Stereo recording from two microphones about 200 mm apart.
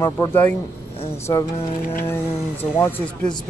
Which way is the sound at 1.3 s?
20° left (ahead or behind).